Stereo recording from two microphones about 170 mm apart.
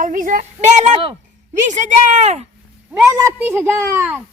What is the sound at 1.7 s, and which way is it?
Speech, 45° right (ahead or behind).